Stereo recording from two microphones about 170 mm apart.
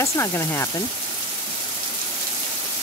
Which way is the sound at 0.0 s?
15° left (ahead or behind).